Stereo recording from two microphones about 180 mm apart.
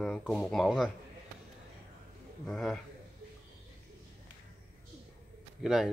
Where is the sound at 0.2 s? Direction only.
Centre (ahead or behind).